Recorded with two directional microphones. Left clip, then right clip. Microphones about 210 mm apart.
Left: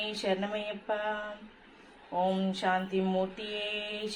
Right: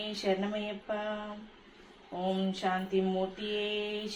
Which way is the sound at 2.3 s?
40° left (ahead or behind).